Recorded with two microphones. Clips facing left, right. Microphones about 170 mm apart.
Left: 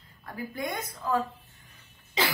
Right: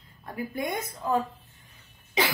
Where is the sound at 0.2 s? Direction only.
20° right (ahead or behind).